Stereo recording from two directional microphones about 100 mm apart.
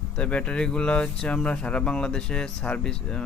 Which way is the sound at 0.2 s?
10° left (ahead or behind).